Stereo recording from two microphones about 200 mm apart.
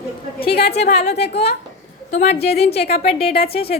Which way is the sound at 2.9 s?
30° left (ahead or behind).